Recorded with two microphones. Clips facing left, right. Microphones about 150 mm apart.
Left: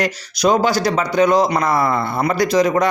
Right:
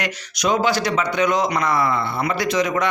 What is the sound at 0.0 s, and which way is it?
A man's voice, 35° left (ahead or behind).